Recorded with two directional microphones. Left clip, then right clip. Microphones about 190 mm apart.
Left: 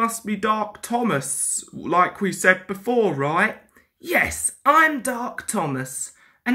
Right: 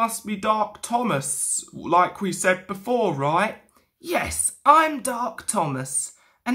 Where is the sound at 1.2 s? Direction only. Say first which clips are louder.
Even; 30° right (ahead or behind).